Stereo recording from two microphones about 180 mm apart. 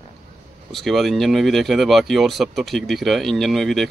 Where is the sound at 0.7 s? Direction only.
Centre (ahead or behind).